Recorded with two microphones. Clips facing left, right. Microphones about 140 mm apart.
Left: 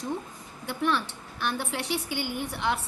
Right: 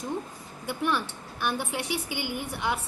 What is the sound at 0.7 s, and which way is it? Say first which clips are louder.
A woman's voice: left 1 dB; 10° right (ahead or behind).